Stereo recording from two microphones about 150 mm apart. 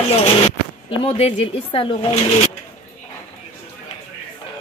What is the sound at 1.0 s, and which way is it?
Speech, 40° left (ahead or behind).